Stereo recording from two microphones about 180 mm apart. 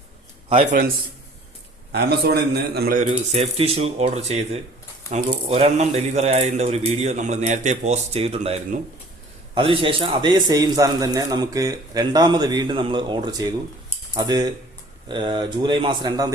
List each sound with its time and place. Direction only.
0.4 s a man's voice: 35° right (ahead or behind)
1.9 s a man's voice: 65° right (ahead or behind)
3.1 s a man's voice: 35° right (ahead or behind)